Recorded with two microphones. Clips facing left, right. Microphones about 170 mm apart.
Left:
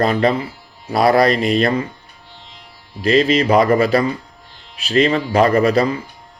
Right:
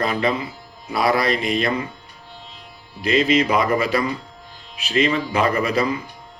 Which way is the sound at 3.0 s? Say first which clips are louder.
Left 3 dB; 35° left (ahead or behind).